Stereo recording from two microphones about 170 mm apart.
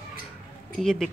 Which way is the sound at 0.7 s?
Centre (ahead or behind).